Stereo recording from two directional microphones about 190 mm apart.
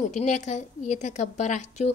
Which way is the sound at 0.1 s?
40° left (ahead or behind).